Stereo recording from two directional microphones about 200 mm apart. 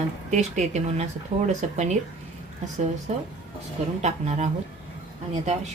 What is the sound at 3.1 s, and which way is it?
Speech, 35° right (ahead or behind).